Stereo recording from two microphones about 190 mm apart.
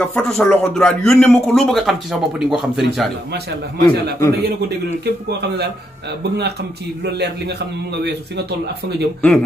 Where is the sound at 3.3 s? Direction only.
60° right (ahead or behind).